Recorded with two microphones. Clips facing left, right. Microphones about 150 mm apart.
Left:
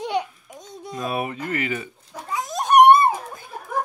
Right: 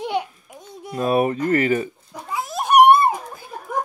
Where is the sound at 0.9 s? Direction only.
45° right (ahead or behind).